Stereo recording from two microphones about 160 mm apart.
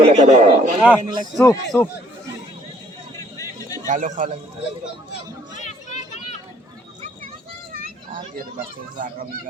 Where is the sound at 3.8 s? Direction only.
55° right (ahead or behind).